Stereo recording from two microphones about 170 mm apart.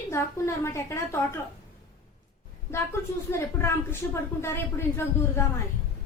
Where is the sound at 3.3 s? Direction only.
15° left (ahead or behind).